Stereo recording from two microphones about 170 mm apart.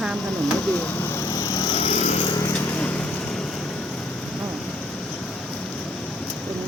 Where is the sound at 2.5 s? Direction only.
10° left (ahead or behind).